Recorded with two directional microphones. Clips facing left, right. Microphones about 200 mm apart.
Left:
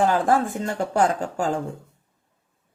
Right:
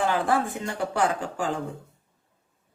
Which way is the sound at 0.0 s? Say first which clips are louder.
Left 4 dB; 45° left (ahead or behind).